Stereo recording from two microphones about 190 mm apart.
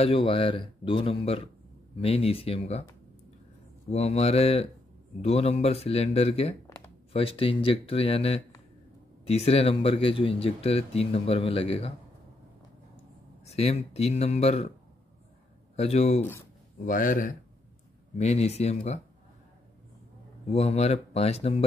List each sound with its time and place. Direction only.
0.0 s speech: 30° left (ahead or behind)
3.9 s speech: 35° left (ahead or behind)
13.5 s speech: 35° left (ahead or behind)
15.7 s speech: 35° left (ahead or behind)
16.2 s speech: 10° left (ahead or behind)
16.8 s speech: 45° left (ahead or behind)
20.4 s speech: 35° left (ahead or behind)